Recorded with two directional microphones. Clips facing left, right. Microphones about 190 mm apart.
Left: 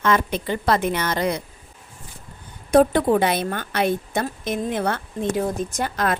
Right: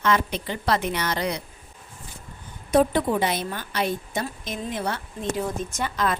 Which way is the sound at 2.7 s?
55° left (ahead or behind).